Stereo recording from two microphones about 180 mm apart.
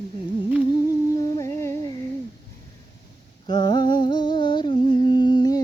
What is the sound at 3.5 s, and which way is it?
Humming, 25° left (ahead or behind).